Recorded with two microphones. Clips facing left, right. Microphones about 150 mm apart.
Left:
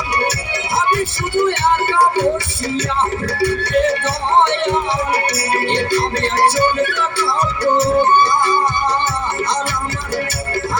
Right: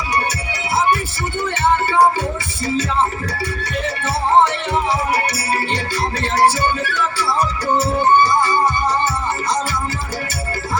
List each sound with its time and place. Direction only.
3.3 s music: 75° left (ahead or behind)
7.6 s music: 65° left (ahead or behind)